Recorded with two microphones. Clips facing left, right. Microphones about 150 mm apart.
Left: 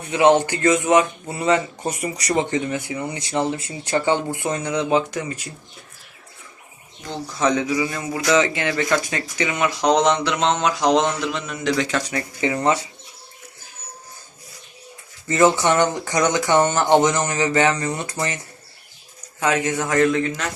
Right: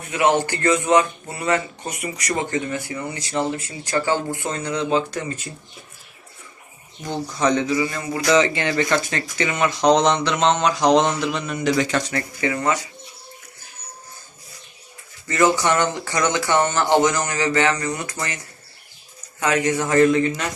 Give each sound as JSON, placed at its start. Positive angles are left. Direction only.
{"t": 0.1, "sound": "speech", "side_deg": 20}
{"t": 1.8, "sound": "speech", "side_deg": 30}
{"t": 7.0, "sound": "a man's voice", "side_deg": 0}
{"t": 12.0, "sound": "speech", "side_deg": 20}
{"t": 15.3, "sound": "speech", "side_deg": 20}
{"t": 19.5, "sound": "a man's voice", "side_deg": 0}